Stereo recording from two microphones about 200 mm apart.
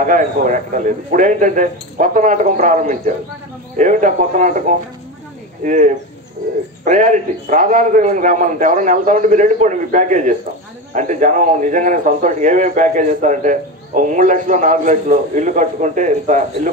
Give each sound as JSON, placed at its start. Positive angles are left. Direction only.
{"t": 0.0, "sound": "a man's voice", "side_deg": -40}